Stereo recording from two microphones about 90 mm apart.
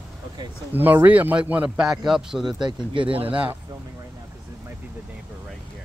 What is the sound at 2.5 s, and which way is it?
Speech, 60° right (ahead or behind).